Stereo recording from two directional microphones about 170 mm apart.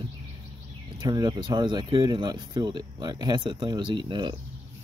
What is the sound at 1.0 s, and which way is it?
Speech, 25° right (ahead or behind).